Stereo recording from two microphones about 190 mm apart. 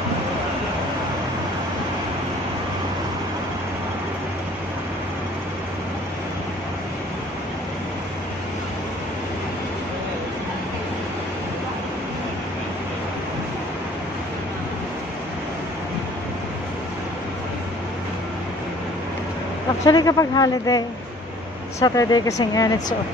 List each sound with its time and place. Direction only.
19.8 s a man's voice: 20° left (ahead or behind)